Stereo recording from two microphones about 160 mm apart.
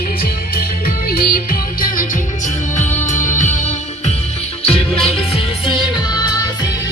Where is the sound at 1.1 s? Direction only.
65° left (ahead or behind).